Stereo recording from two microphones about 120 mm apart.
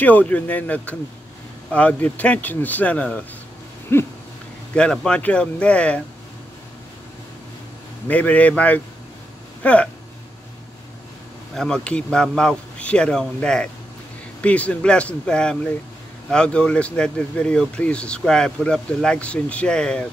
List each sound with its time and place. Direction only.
0.0 s speech: 15° left (ahead or behind)
3.9 s a sound: 20° left (ahead or behind)
4.9 s speech: 5° left (ahead or behind)
8.1 s speech: 10° left (ahead or behind)
11.5 s speech: 5° left (ahead or behind)